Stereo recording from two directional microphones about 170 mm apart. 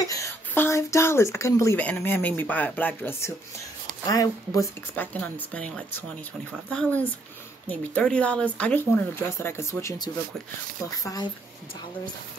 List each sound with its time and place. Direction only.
0.0 s speech: 20° left (ahead or behind)